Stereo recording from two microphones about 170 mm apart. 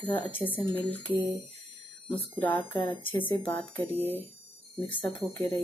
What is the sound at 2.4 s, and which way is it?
Speech, 10° left (ahead or behind).